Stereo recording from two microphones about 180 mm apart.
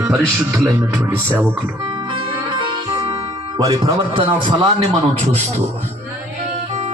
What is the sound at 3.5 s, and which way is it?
A man's voice, 20° right (ahead or behind).